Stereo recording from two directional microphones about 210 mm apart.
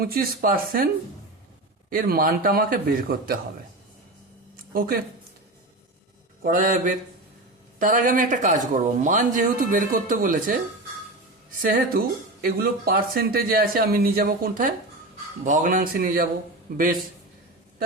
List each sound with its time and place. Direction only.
0.0 s speech: 45° right (ahead or behind)
1.9 s speech: 45° right (ahead or behind)
4.5 s a sound: 45° right (ahead or behind)
6.4 s a man's voice: 40° right (ahead or behind)
11.6 s a man's voice: 45° right (ahead or behind)